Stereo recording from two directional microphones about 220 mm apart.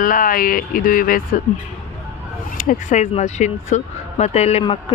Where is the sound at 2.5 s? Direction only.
35° left (ahead or behind).